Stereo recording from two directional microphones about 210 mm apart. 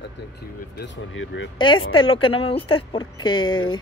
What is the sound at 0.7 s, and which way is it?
Speech, 55° left (ahead or behind).